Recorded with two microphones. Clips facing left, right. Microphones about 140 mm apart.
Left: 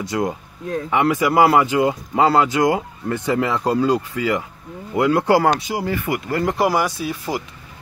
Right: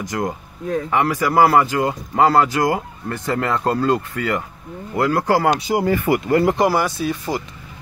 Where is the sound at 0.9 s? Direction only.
20° left (ahead or behind).